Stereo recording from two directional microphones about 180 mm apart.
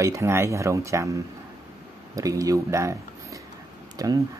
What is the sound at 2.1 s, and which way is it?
Speech, 20° right (ahead or behind).